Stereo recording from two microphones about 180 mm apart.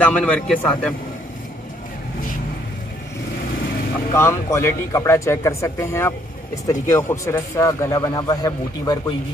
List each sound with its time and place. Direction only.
0.0 s a man's voice: 5° left (ahead or behind)
4.1 s a man's voice: 15° left (ahead or behind)